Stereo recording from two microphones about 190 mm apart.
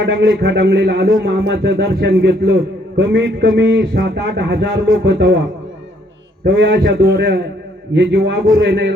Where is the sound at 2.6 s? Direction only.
70° right (ahead or behind).